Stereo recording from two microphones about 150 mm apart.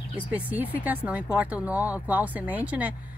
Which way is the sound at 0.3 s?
10° right (ahead or behind).